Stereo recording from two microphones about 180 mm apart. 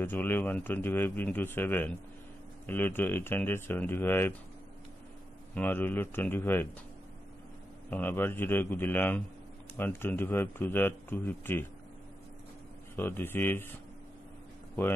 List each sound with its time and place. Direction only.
0.0 s speech: 10° left (ahead or behind)
5.5 s speech: 10° left (ahead or behind)
7.9 s speech: 10° left (ahead or behind)
12.9 s speech: 10° left (ahead or behind)